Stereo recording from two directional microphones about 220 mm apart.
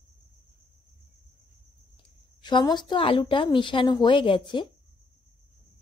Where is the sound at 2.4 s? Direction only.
20° left (ahead or behind).